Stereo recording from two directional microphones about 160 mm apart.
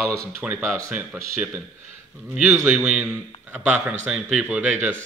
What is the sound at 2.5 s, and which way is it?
Speech, 15° right (ahead or behind).